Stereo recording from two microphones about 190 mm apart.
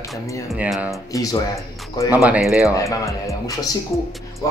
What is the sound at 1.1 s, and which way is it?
Speech, 20° left (ahead or behind).